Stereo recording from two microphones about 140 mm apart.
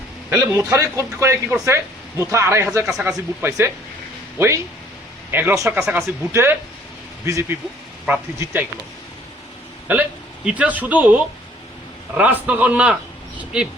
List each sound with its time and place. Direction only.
0.7 s speech: 20° right (ahead or behind)
5.7 s speech: 5° right (ahead or behind)
9.9 s speech: 10° right (ahead or behind)